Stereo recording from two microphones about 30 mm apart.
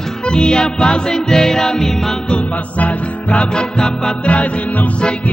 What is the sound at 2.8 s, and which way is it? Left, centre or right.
Music, left.